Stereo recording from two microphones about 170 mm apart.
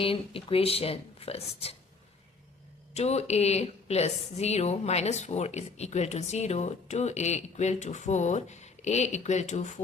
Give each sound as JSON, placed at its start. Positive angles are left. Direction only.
{"t": 0.0, "sound": "a woman's voice", "side_deg": 30}
{"t": 2.9, "sound": "a woman's voice", "side_deg": 40}